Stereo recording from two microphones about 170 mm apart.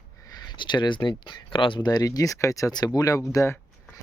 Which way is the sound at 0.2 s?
25° left (ahead or behind).